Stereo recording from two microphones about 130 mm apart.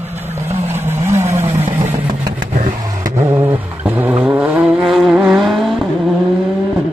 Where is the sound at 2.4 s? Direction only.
85° right.